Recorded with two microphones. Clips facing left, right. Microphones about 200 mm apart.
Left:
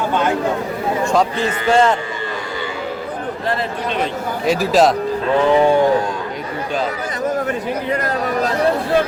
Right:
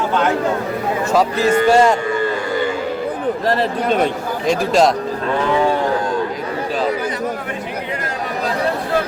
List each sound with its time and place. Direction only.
1.5 s a man's voice: 45° right (ahead or behind)
1.7 s speech: 10° right (ahead or behind)
4.4 s speech: 5° left (ahead or behind)